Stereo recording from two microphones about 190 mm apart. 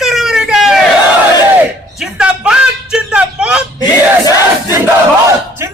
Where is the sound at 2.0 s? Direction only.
5° right (ahead or behind).